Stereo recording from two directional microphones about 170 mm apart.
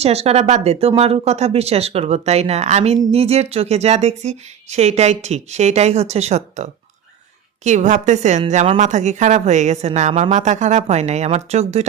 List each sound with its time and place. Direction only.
0.0 s a woman's voice: 35° right (ahead or behind)